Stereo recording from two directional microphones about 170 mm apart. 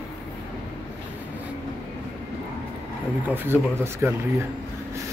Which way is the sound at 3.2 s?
10° right (ahead or behind).